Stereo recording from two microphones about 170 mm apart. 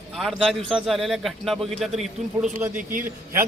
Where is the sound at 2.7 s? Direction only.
50° right (ahead or behind).